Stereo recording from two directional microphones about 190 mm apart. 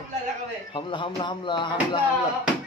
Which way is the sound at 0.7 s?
25° left (ahead or behind).